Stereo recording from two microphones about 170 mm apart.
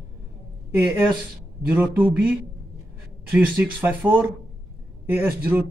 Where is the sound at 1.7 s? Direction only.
10° right (ahead or behind).